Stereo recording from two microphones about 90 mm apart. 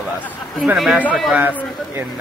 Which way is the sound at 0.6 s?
5° right (ahead or behind).